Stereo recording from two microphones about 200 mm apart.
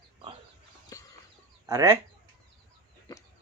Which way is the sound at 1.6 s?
15° right (ahead or behind).